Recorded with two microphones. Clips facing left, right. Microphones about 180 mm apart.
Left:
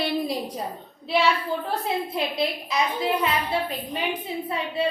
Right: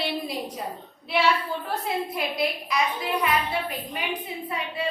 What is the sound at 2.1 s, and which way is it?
A woman's voice, 25° left (ahead or behind).